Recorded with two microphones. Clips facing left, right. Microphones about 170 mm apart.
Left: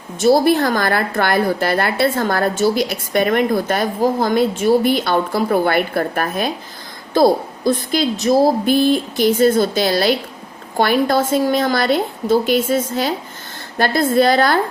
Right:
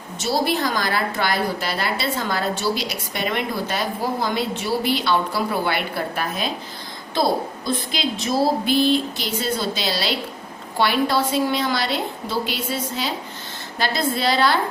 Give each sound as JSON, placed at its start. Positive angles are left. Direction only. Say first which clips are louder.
{"t": 0.2, "sound": "a woman's voice", "louder": "left 9 dB", "side_deg": 55}